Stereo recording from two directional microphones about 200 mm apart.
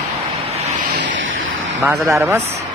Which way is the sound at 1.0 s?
70° right (ahead or behind).